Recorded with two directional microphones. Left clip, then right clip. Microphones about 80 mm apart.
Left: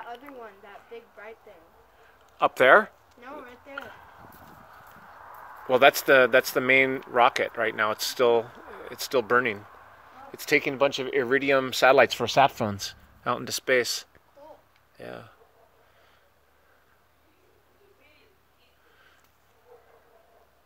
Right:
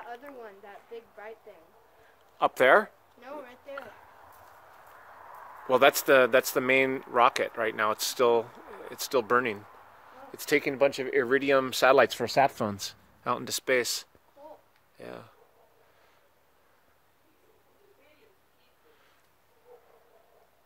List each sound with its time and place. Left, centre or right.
0.9 s speech: right
2.5 s speech: centre
3.2 s speech: right
5.7 s speech: centre
10.9 s speech: left
11.2 s speech: centre
12.3 s speech: left
12.5 s speech: centre